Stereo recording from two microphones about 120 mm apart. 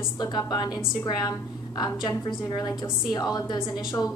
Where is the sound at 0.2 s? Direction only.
35° left (ahead or behind).